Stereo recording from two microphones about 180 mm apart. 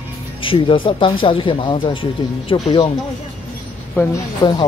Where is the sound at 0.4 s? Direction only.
30° left (ahead or behind).